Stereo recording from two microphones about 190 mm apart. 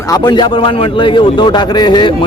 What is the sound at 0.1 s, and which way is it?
Speech, 25° left (ahead or behind).